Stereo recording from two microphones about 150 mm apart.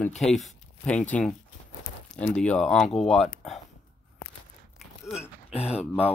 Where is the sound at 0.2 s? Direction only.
Centre (ahead or behind).